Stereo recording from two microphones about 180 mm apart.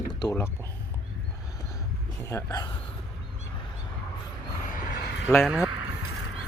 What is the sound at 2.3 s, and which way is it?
Speech, 20° left (ahead or behind).